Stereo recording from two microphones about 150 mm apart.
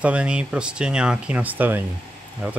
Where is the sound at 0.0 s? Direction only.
10° right (ahead or behind).